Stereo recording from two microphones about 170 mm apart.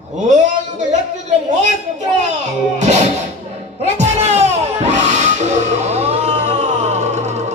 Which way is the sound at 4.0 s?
40° right (ahead or behind).